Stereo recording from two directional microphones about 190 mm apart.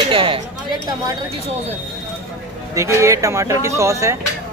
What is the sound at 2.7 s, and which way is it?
Speech, 15° right (ahead or behind).